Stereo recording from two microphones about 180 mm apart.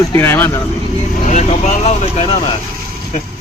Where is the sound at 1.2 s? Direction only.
40° left (ahead or behind).